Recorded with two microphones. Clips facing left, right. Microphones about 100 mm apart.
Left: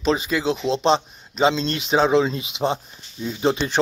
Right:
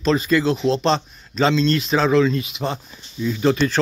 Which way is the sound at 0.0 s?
15° left (ahead or behind).